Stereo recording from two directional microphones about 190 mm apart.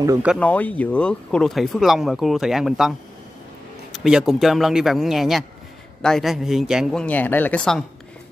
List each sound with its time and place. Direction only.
0.4 s speech: 10° left (ahead or behind)
3.9 s speech: 5° right (ahead or behind)